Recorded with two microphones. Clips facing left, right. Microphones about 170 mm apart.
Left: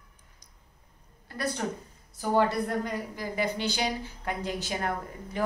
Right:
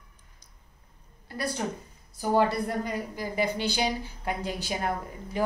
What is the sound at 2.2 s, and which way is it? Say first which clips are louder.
A woman's voice: right 1 dB; 10° right (ahead or behind).